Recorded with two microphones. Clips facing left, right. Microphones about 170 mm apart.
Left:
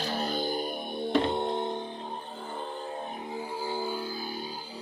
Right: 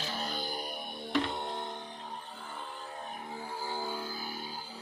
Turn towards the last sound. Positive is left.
turn(degrees=10)  # may be behind; listen again after turning